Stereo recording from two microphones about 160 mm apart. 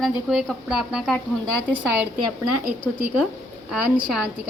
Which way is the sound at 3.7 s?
5° right (ahead or behind).